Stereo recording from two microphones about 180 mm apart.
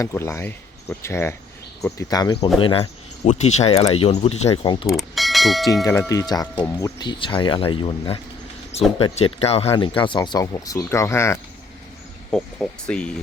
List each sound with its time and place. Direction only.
0.0 s speech: 15° left (ahead or behind)
4.9 s mechanisms: centre (ahead or behind)
5.8 s speech: 15° left (ahead or behind)